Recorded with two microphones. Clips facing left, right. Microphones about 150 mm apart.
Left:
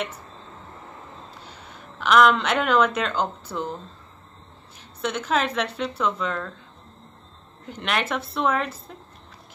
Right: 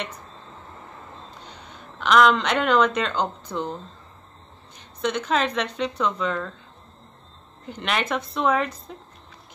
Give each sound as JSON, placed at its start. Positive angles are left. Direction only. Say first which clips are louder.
{"t": 1.4, "sound": "speech", "louder": "even", "side_deg": 5}
{"t": 4.7, "sound": "speech", "louder": "right 2 dB", "side_deg": 5}
{"t": 7.6, "sound": "speech", "louder": "even", "side_deg": 0}